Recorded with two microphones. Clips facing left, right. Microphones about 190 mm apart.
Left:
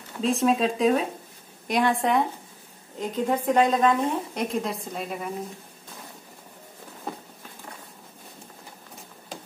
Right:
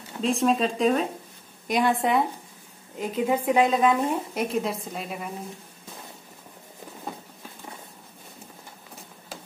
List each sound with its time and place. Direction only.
0.2 s a woman's voice: centre (ahead or behind)